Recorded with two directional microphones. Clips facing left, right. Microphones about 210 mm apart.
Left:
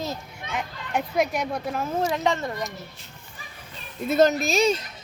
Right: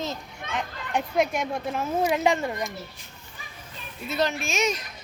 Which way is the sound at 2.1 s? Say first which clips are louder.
Right 2 dB; 15° right (ahead or behind).